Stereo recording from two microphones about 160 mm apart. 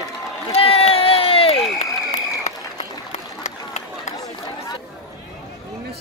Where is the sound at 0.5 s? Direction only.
35° left (ahead or behind).